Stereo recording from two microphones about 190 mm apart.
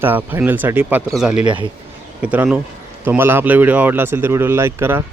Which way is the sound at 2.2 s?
5° right (ahead or behind).